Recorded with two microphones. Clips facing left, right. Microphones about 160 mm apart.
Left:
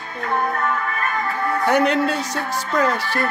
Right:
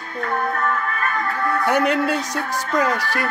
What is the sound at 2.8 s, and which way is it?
Speech, 10° right (ahead or behind).